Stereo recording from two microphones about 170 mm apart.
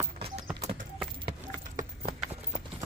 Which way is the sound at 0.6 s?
40° right (ahead or behind).